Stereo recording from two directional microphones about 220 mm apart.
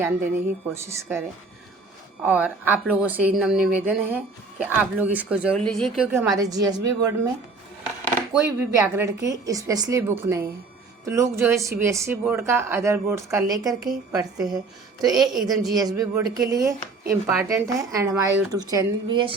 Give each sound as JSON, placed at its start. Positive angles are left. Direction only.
{"t": 0.0, "sound": "speech", "side_deg": -10}
{"t": 2.2, "sound": "speech", "side_deg": -5}
{"t": 6.1, "sound": "speech", "side_deg": -10}
{"t": 8.3, "sound": "speech", "side_deg": -10}
{"t": 15.4, "sound": "speech", "side_deg": -15}